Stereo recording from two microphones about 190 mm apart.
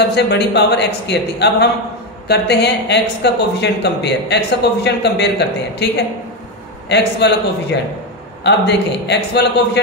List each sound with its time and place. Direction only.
0.0 s speech: 60° left (ahead or behind)